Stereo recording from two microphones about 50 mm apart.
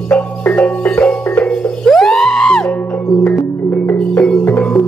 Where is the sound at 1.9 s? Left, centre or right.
Centre.